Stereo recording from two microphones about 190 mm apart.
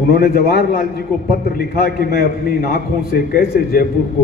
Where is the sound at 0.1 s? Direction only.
50° left (ahead or behind).